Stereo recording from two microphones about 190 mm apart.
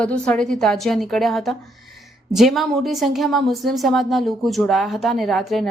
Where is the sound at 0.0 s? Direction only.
5° left (ahead or behind).